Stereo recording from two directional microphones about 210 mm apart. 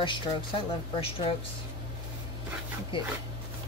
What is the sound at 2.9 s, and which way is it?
Speech, 25° left (ahead or behind).